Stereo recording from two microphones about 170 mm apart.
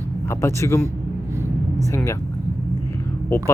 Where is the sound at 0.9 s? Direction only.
15° right (ahead or behind).